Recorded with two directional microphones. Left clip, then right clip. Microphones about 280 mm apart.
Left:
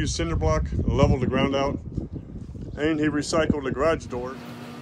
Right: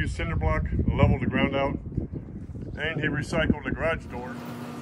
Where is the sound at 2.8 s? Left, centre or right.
Centre.